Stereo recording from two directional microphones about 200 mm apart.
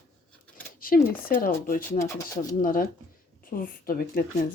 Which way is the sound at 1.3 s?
45° left (ahead or behind).